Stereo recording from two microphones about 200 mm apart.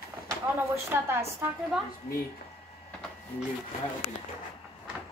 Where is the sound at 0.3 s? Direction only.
10° right (ahead or behind).